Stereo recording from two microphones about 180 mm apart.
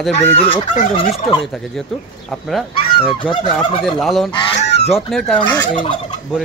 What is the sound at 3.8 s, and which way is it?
Fowl, centre (ahead or behind).